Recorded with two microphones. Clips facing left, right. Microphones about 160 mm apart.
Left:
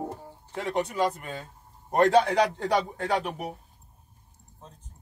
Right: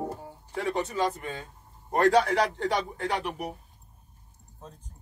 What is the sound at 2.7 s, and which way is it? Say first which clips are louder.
Speech: left 3 dB; 45° left (ahead or behind).